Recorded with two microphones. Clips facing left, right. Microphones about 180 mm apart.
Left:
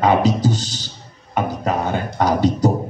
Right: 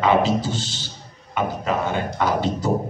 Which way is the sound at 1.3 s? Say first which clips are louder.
Left 2 dB; 40° left (ahead or behind).